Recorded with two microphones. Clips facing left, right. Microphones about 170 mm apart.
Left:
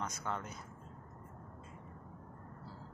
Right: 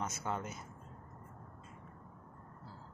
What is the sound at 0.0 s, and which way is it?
Speech, 10° right (ahead or behind).